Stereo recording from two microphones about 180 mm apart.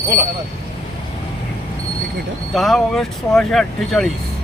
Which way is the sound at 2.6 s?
Centre (ahead or behind).